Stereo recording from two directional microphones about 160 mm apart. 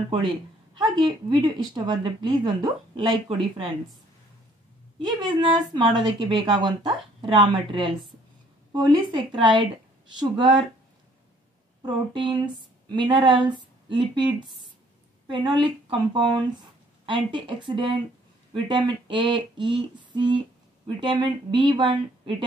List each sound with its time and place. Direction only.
1.0 s speech: 30° right (ahead or behind)
5.0 s a woman's voice: 30° right (ahead or behind)
11.8 s speech: 30° right (ahead or behind)